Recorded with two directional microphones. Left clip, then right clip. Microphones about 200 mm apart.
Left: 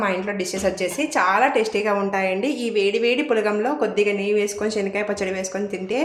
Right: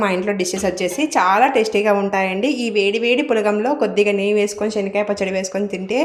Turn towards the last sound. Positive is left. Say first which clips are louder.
# right 4 dB
turn(degrees=-20)  # may be behind; listen again after turning